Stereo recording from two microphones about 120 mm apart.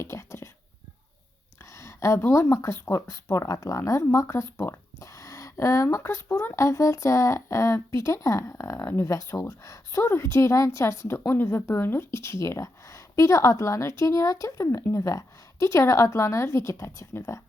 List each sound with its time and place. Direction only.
0.0 s whispering: 25° left (ahead or behind)
1.8 s speech: 25° left (ahead or behind)